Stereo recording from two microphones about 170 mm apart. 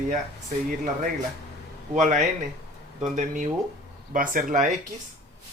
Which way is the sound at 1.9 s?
45° right (ahead or behind).